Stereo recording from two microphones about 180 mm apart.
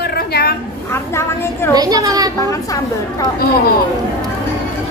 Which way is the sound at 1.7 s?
20° right (ahead or behind).